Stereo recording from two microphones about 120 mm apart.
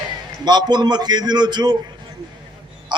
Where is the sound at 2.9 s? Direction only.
40° right (ahead or behind).